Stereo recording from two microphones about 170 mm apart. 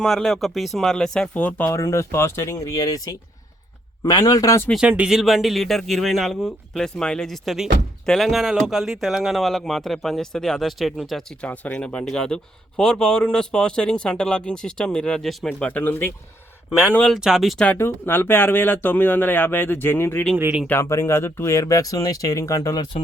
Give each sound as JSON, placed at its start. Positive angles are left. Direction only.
{"t": 0.0, "sound": "speech", "side_deg": 0}
{"t": 4.0, "sound": "speech", "side_deg": 20}
{"t": 4.7, "sound": "speech", "side_deg": -5}
{"t": 17.1, "sound": "speech", "side_deg": -5}
{"t": 20.2, "sound": "speech", "side_deg": -5}
{"t": 20.7, "sound": "speech", "side_deg": 15}